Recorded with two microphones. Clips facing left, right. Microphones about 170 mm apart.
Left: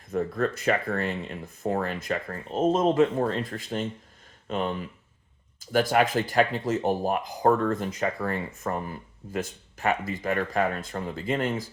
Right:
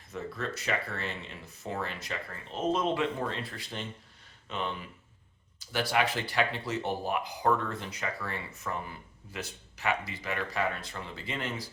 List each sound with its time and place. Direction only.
0.1 s speech: 50° left (ahead or behind)